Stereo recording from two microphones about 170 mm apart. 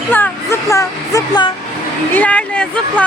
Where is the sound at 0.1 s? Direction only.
15° left (ahead or behind).